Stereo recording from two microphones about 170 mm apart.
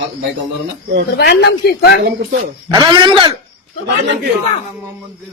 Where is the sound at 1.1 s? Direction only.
75° left (ahead or behind).